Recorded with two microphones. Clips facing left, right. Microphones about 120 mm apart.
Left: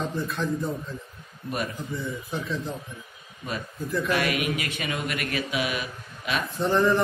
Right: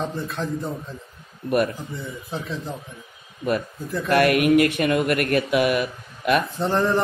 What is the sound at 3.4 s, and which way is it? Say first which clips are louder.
A man's voice: right 8 dB; 55° right (ahead or behind).